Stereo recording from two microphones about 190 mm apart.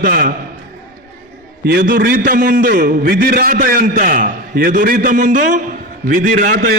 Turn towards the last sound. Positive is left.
turn(degrees=-45)  # may be behind; listen again after turning